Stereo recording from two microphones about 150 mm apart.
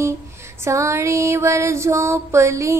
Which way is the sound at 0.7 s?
20° right (ahead or behind).